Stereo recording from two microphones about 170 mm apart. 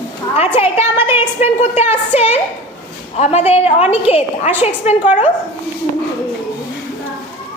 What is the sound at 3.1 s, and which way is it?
A woman's voice, 40° left (ahead or behind).